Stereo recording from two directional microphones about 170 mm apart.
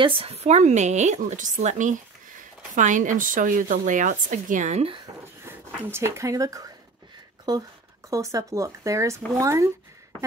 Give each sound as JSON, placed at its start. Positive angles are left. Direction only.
{"t": 0.0, "sound": "speech", "side_deg": -35}
{"t": 5.4, "sound": "speech", "side_deg": -15}